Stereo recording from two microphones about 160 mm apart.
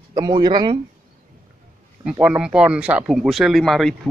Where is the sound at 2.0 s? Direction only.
5° right (ahead or behind).